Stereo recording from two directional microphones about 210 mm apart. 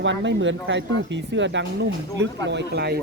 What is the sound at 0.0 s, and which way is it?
Speech, 60° right (ahead or behind).